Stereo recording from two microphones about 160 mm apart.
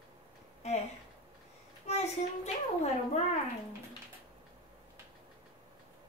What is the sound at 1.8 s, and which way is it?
A child's voice, 45° left (ahead or behind).